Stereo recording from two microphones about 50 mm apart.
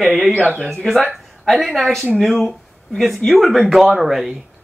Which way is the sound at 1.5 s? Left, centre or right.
Centre.